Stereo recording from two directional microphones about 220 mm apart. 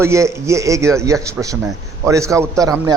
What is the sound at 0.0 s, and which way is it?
A man's voice, 15° right (ahead or behind).